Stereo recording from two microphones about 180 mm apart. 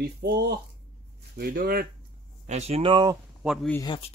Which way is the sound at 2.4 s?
40° right (ahead or behind).